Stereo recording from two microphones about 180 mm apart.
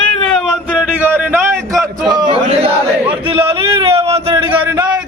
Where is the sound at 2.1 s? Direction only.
25° right (ahead or behind).